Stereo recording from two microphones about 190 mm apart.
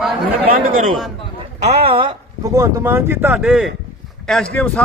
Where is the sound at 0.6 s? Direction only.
45° right (ahead or behind).